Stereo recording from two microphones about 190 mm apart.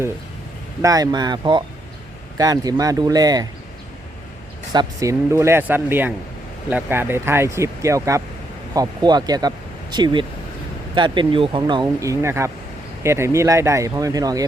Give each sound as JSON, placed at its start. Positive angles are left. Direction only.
{"t": 0.8, "sound": "speech", "side_deg": -20}
{"t": 4.7, "sound": "speech", "side_deg": -20}